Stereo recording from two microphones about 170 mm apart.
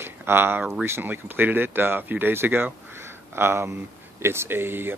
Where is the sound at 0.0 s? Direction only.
15° right (ahead or behind).